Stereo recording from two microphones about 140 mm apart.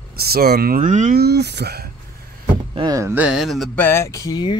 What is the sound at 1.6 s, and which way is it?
Speech, 90° right.